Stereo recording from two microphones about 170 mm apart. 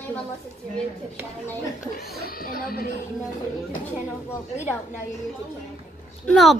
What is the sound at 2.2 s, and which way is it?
Speech, 60° left (ahead or behind).